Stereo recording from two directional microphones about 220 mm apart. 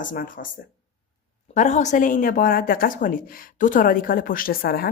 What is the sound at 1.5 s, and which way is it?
Speech, 35° left (ahead or behind).